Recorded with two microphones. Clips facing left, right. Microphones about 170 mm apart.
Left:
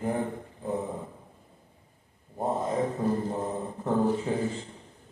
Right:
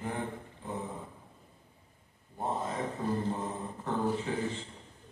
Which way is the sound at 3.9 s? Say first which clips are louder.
Left 6 dB; 40° left (ahead or behind).